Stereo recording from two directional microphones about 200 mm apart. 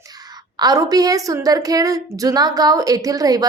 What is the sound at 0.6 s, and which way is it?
A woman's voice, 20° right (ahead or behind).